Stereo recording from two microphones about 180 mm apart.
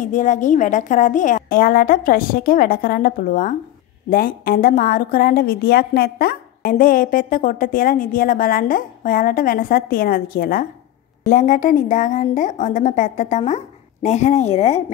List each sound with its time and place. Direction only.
0.0 s a woman's voice: 45° left (ahead or behind)
11.2 s a woman's voice: 45° left (ahead or behind)